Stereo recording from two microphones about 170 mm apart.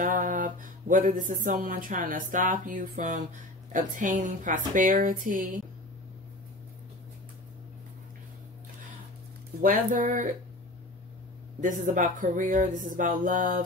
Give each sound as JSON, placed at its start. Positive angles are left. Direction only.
{"t": 0.0, "sound": "speech", "side_deg": -50}
{"t": 9.6, "sound": "speech", "side_deg": -55}
{"t": 11.6, "sound": "speech", "side_deg": -50}